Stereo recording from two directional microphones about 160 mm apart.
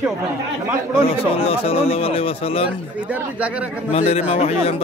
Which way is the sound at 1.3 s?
35° left (ahead or behind).